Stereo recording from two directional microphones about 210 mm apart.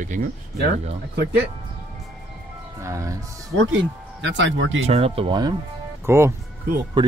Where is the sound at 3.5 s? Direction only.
60° right (ahead or behind).